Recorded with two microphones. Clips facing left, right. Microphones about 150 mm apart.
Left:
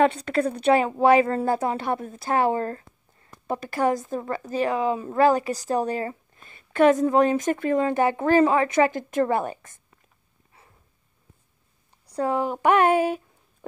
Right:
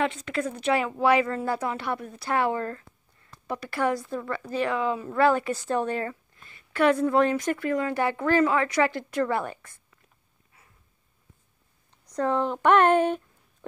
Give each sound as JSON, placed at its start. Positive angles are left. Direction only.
{"t": 0.0, "sound": "a woman's voice", "side_deg": 40}
{"t": 1.0, "sound": "speech", "side_deg": 50}
{"t": 2.5, "sound": "a sound", "side_deg": 30}
{"t": 3.5, "sound": "a woman's voice", "side_deg": 45}
{"t": 4.6, "sound": "a woman's voice", "side_deg": 20}
{"t": 5.2, "sound": "a woman's voice", "side_deg": 40}
{"t": 6.0, "sound": "a sound", "side_deg": 25}
{"t": 7.0, "sound": "a woman's voice", "side_deg": 15}
{"t": 12.2, "sound": "speech", "side_deg": 10}